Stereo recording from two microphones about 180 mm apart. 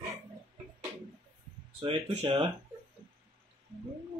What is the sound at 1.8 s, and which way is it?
Speech, 30° right (ahead or behind).